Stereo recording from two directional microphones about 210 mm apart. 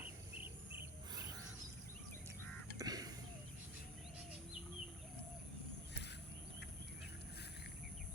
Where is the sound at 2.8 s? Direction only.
20° right (ahead or behind).